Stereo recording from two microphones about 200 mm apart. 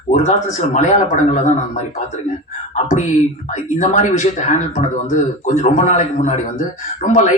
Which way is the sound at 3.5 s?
35° left (ahead or behind).